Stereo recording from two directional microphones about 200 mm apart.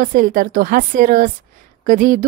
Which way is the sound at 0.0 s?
45° right (ahead or behind).